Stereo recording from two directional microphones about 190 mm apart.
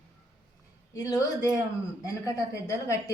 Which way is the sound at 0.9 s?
20° left (ahead or behind).